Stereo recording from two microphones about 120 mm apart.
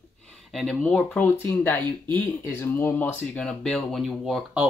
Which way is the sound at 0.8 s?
10° left (ahead or behind).